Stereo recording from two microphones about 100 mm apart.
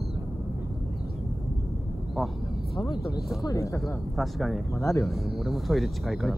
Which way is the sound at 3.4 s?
30° left (ahead or behind).